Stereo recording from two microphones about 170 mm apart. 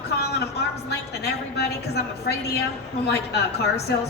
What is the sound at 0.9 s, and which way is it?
A woman's voice, 75° left (ahead or behind).